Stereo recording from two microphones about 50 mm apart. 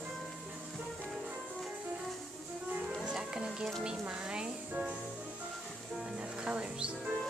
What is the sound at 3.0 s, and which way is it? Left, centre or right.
Music, centre.